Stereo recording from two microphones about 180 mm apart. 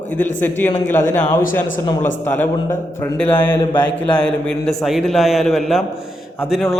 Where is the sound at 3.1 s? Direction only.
10° left (ahead or behind).